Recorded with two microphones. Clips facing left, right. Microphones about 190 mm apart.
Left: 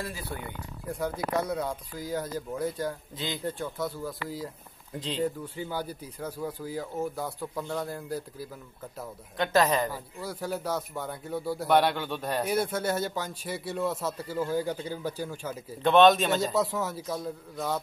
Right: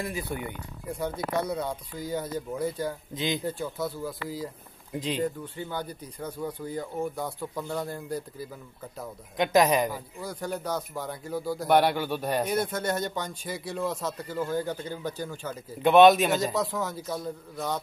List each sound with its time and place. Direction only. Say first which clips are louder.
0.0 s a man's voice: right 4 dB; 20° right (ahead or behind)
0.8 s speech: even; centre (ahead or behind)
9.4 s a man's voice: right 2 dB; 15° right (ahead or behind)
9.9 s speech: even; centre (ahead or behind)
11.6 s a man's voice: right 2 dB; 10° right (ahead or behind)
12.4 s speech: even; 10° left (ahead or behind)
15.8 s a man's voice: right 3 dB; 10° right (ahead or behind)
16.5 s speech: left 1 dB; 5° left (ahead or behind)